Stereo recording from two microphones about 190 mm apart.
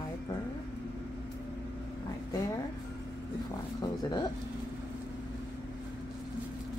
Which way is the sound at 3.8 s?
20° left (ahead or behind).